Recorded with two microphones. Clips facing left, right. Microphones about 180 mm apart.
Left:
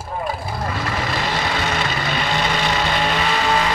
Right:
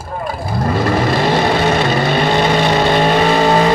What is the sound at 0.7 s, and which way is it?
Vehicle, 55° right (ahead or behind).